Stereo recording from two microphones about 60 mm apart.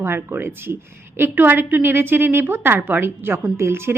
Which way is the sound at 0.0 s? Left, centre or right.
Right.